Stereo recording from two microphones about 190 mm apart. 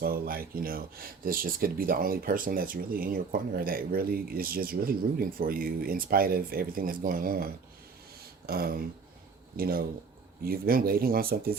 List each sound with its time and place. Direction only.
0.0 s speech: 50° right (ahead or behind)